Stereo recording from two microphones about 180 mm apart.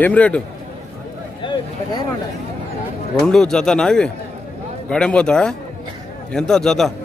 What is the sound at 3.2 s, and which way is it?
Speech, 5° left (ahead or behind).